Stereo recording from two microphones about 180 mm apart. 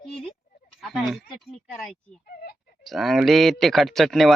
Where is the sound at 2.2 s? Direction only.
55° left (ahead or behind).